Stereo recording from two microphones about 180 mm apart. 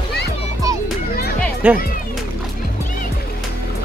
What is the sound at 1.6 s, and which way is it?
Speech, 10° right (ahead or behind).